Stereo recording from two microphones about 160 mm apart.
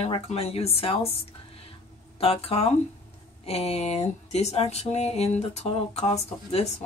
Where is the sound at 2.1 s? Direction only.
35° left (ahead or behind).